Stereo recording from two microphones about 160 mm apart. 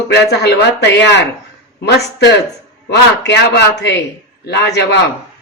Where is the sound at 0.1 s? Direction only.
90° left.